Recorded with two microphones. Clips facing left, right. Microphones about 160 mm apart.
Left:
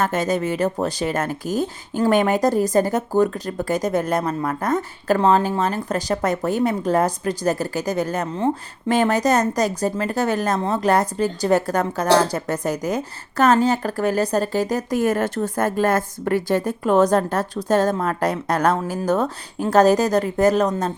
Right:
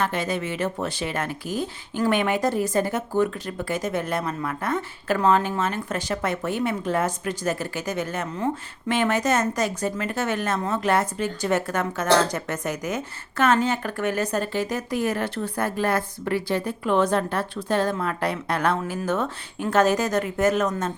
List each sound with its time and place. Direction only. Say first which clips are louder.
0.0 s speech: left 5 dB; 45° left (ahead or behind)